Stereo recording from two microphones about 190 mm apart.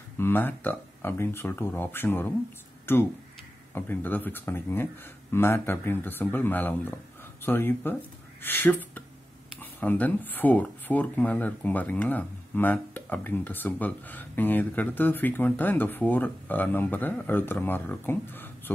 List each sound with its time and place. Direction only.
0.2 s speech: 10° left (ahead or behind)